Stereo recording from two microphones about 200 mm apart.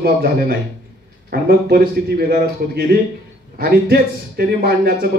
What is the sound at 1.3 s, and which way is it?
Speech, 50° right (ahead or behind).